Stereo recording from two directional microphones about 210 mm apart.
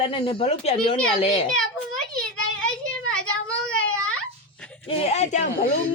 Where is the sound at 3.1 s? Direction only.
5° left (ahead or behind).